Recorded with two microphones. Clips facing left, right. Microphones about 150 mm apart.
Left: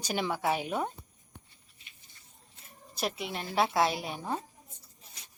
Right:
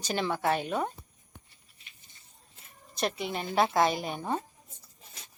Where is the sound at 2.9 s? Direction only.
5° left (ahead or behind).